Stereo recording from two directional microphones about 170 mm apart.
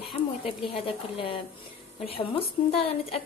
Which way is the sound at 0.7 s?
35° left (ahead or behind).